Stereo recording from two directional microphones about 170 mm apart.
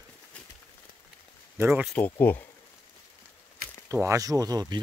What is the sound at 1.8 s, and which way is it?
Speech, 10° left (ahead or behind).